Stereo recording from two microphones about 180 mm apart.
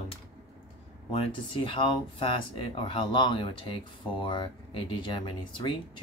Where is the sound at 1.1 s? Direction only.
30° left (ahead or behind).